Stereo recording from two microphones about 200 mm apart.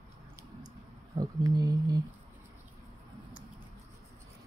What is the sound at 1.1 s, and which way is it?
Speech, 20° right (ahead or behind).